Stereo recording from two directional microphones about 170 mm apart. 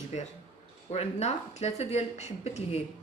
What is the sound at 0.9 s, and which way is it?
A woman's voice, 40° left (ahead or behind).